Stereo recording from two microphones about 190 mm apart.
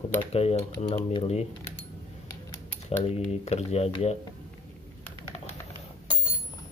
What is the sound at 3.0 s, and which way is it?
Speech, 35° left (ahead or behind).